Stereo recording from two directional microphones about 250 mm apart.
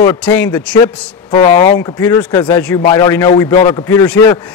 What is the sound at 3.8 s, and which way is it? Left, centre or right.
Speech, centre.